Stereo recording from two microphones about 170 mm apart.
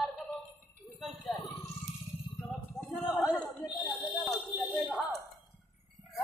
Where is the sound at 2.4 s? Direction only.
Centre (ahead or behind).